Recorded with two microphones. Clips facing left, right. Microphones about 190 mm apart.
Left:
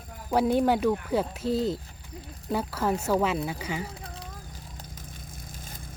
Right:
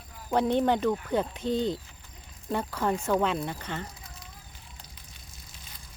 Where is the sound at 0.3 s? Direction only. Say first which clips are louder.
Left 1 dB; 5° left (ahead or behind).